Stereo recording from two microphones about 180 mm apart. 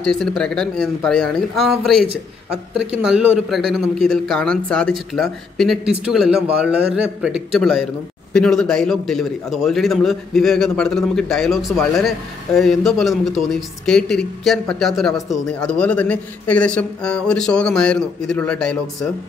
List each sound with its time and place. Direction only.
0.0 s speech: 5° left (ahead or behind)